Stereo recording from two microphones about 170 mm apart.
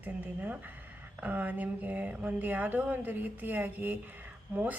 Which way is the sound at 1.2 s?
10° right (ahead or behind).